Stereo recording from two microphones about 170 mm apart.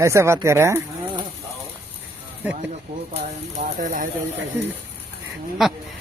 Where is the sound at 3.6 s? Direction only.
50° right (ahead or behind).